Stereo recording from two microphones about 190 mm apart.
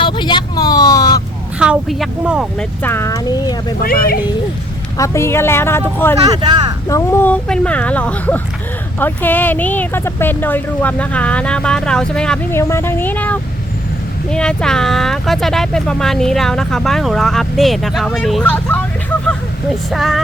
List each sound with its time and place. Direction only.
0.0 s vehicle: 25° left (ahead or behind)
1.5 s speech: 5° right (ahead or behind)
2.8 s speech: 15° left (ahead or behind)
3.8 s speech: 50° left (ahead or behind)
4.9 s speech: 15° left (ahead or behind)
6.1 s speech: 20° right (ahead or behind)
6.8 s speech: 15° left (ahead or behind)
19.9 s speech: centre (ahead or behind)